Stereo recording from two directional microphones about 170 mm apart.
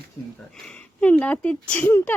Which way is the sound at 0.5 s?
5° left (ahead or behind).